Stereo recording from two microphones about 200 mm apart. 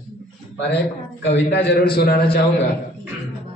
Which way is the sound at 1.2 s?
55° left (ahead or behind).